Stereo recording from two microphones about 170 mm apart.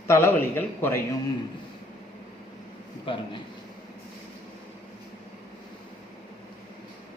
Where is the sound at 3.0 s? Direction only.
30° left (ahead or behind).